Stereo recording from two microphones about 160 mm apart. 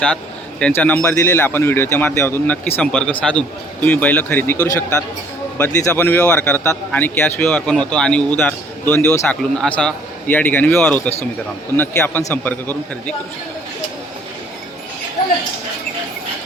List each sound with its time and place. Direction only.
0.6 s speech: 10° left (ahead or behind)